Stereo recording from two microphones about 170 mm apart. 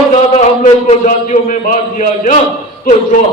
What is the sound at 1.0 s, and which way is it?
A man's voice, 50° left (ahead or behind).